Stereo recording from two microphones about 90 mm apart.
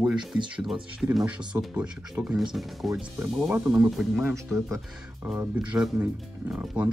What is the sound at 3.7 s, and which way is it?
Speech, 10° right (ahead or behind).